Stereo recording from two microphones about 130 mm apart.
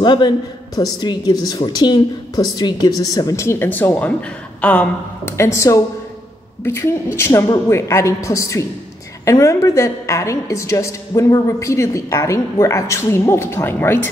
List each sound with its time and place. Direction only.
0.0 s a woman's voice: 35° left (ahead or behind); by 14.0 s 15° left (ahead or behind)